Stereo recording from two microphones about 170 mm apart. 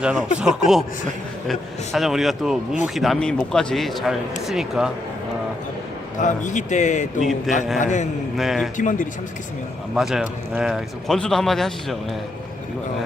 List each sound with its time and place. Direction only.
0.0 s a man's voice: 5° right (ahead or behind)
6.1 s a man's voice: 45° left (ahead or behind)
8.4 s a man's voice: centre (ahead or behind)
8.8 s a man's voice: 50° left (ahead or behind)
9.9 s a man's voice: 5° right (ahead or behind)